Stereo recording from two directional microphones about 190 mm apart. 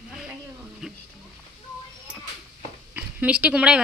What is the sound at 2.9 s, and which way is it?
Speech, 5° right (ahead or behind).